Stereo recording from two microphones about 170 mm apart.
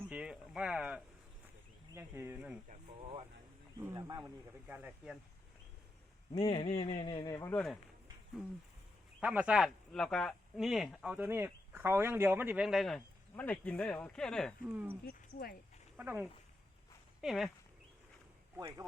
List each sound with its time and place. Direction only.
0.1 s speech: 5° right (ahead or behind)
3.0 s speech: 30° right (ahead or behind)
3.8 s a man's voice: 20° right (ahead or behind)
6.3 s speech: 30° left (ahead or behind)
7.3 s speech: 15° left (ahead or behind)
9.2 s speech: 5° right (ahead or behind)
15.0 s speech: 60° left (ahead or behind)
16.0 s speech: 10° right (ahead or behind)
18.5 s speech: 15° right (ahead or behind)